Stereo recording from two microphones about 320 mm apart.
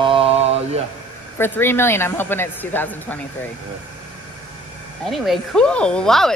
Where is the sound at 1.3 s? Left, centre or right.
Centre.